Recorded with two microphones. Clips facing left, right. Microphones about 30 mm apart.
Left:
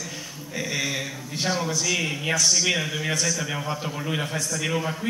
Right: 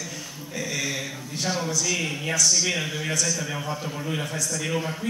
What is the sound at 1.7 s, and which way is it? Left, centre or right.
A man's voice, centre.